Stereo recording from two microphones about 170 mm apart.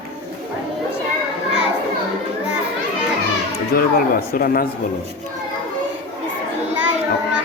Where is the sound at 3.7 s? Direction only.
60° left (ahead or behind).